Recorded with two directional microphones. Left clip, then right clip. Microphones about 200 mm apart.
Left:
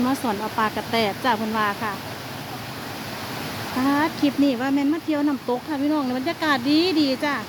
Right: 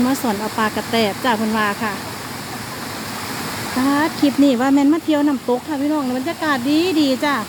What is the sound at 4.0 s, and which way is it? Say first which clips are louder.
Speech: right 6 dB; 15° right (ahead or behind).